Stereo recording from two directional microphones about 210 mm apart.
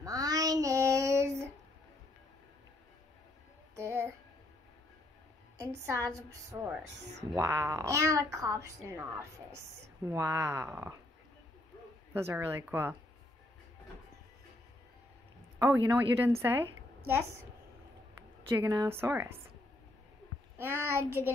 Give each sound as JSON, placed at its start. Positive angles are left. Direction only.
{"t": 0.0, "sound": "child singing", "side_deg": -15}
{"t": 3.7, "sound": "a sound", "side_deg": -15}
{"t": 5.6, "sound": "a woman's voice", "side_deg": -15}
{"t": 10.0, "sound": "a woman's voice", "side_deg": -10}
{"t": 12.1, "sound": "a woman's voice", "side_deg": -10}
{"t": 15.6, "sound": "a woman's voice", "side_deg": -10}
{"t": 18.5, "sound": "a woman's voice", "side_deg": -15}
{"t": 20.5, "sound": "a woman's voice", "side_deg": -10}